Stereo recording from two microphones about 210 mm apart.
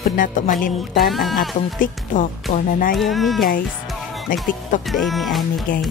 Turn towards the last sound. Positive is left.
turn(degrees=40)  # may be behind; listen again after turning